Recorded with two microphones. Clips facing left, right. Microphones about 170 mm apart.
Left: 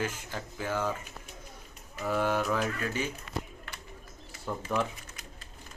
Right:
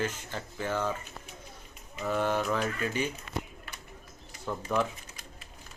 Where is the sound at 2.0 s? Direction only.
5° left (ahead or behind).